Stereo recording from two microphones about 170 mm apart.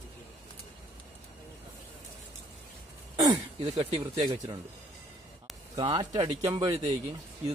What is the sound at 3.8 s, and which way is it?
Speech, 35° right (ahead or behind).